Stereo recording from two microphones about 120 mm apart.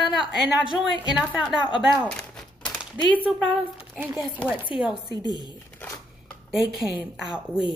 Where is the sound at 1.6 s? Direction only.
40° left (ahead or behind).